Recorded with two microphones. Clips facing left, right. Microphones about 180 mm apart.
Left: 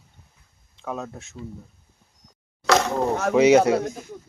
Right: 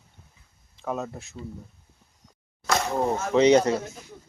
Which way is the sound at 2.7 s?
70° left (ahead or behind).